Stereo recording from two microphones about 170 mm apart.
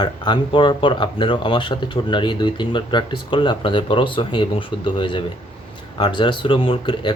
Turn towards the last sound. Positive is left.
turn(degrees=30)  # may be behind; listen again after turning